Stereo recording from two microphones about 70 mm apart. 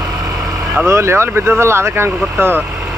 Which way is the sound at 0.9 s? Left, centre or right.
Right.